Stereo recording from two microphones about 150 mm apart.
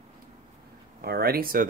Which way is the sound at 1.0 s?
90° right.